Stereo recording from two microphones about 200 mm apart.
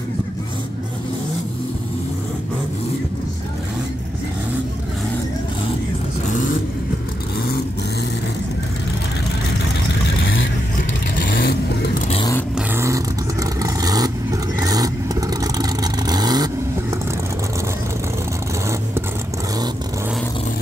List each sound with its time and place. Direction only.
6.2 s vehicle: 40° left (ahead or behind)
10.2 s vehicle: 75° left (ahead or behind)
10.8 s vehicle: 45° left (ahead or behind)
12.5 s vehicle: 15° right (ahead or behind)